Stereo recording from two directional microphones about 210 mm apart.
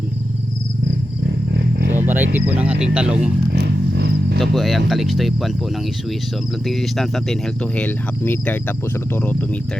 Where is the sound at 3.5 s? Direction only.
50° right (ahead or behind).